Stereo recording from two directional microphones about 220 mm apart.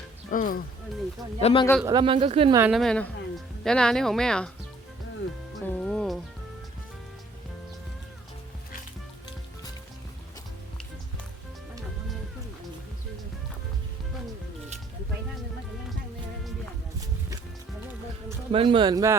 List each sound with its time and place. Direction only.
0.3 s speech: 40° left (ahead or behind)
1.4 s speech: 30° left (ahead or behind)
1.8 s speech: 20° right (ahead or behind)
2.6 s speech: 5° right (ahead or behind)
5.5 s music: 5° left (ahead or behind)
18.5 s speech: 25° right (ahead or behind)